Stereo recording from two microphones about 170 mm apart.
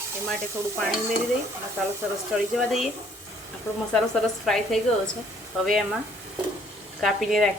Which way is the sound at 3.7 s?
15° left (ahead or behind).